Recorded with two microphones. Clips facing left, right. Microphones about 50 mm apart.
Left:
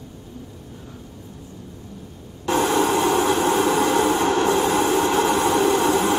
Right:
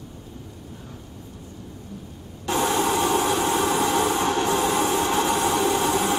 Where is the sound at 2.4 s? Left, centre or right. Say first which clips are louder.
Left 3 dB; left.